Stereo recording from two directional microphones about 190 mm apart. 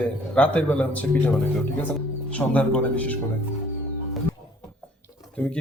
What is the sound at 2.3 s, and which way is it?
Speech, 5° left (ahead or behind).